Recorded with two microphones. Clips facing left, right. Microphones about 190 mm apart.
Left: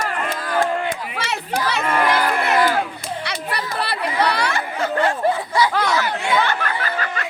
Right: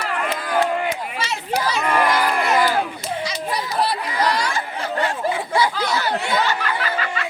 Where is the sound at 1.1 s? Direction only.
60° left (ahead or behind).